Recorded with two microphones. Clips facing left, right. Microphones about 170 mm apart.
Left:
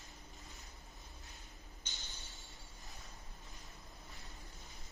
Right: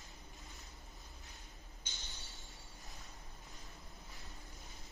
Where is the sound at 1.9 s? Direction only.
Centre (ahead or behind).